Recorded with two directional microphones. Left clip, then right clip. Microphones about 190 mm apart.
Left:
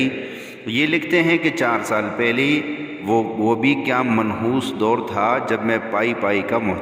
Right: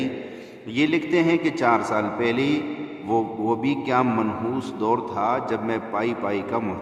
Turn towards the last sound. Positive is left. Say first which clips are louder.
# left 6 dB
turn(degrees=25)  # may be behind; listen again after turning